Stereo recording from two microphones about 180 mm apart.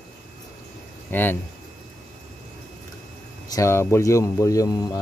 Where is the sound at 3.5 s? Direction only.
15° left (ahead or behind).